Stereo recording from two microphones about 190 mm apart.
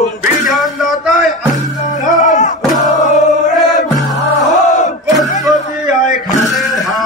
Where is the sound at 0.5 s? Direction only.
Centre (ahead or behind).